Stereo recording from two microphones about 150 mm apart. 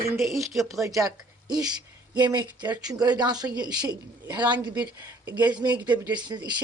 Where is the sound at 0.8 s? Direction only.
20° right (ahead or behind).